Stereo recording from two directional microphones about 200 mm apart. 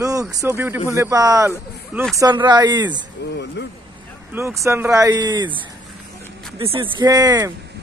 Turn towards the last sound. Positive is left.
turn(degrees=-20)  # may be behind; listen again after turning